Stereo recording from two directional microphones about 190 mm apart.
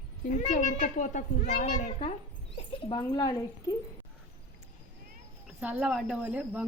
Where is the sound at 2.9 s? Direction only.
20° left (ahead or behind).